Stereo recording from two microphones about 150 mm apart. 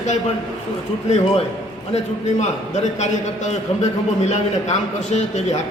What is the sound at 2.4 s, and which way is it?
A man's voice, 50° left (ahead or behind).